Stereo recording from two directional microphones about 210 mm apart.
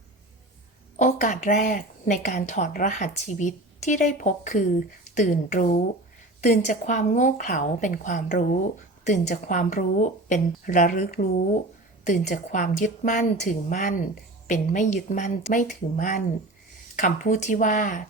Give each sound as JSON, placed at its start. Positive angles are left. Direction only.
{"t": 0.9, "sound": "a woman's voice", "side_deg": 35}